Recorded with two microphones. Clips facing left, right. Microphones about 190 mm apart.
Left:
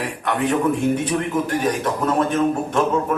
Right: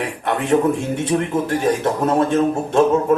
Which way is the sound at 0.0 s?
25° right (ahead or behind).